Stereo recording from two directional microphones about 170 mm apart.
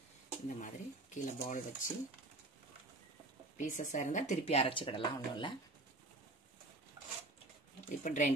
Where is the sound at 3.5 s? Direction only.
45° left (ahead or behind); by 5.6 s 30° left (ahead or behind).